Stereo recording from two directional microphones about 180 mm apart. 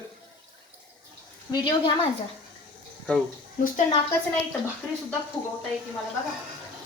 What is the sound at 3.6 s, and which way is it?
Speech, 45° left (ahead or behind).